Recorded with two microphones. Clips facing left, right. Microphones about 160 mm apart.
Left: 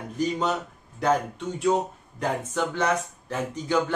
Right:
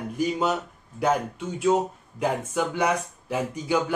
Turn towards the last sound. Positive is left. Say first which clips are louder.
# right 1 dB
turn(degrees=-10)  # may be behind; listen again after turning